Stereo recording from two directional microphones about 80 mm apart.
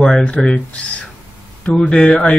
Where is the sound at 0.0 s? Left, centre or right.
Centre.